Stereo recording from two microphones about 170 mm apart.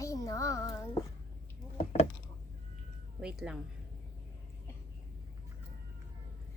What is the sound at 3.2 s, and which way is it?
Speech, 5° right (ahead or behind).